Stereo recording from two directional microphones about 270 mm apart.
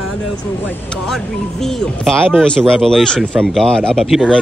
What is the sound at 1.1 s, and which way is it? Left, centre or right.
Speech, centre.